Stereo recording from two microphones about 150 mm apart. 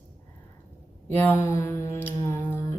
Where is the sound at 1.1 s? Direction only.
15° left (ahead or behind).